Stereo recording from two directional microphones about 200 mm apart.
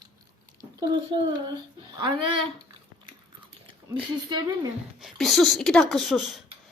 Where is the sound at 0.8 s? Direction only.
20° right (ahead or behind).